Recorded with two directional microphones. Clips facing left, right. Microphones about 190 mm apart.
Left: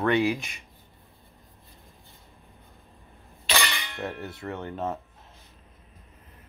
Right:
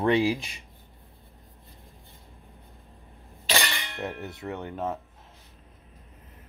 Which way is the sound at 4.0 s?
20° right (ahead or behind).